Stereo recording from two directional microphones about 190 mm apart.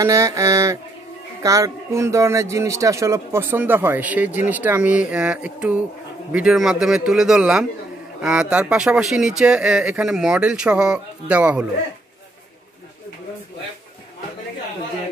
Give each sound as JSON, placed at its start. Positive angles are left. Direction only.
{"t": 0.0, "sound": "speech", "side_deg": -15}